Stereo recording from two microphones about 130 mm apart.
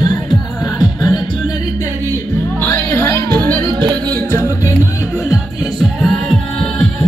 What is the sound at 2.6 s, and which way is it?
Music, 15° left (ahead or behind).